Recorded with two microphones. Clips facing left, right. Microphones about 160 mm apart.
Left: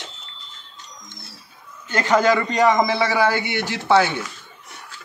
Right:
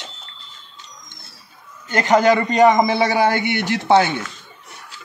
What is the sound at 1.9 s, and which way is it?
A man's voice, 15° right (ahead or behind).